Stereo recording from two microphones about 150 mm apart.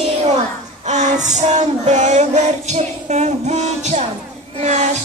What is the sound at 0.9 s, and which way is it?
Music, 50° right (ahead or behind).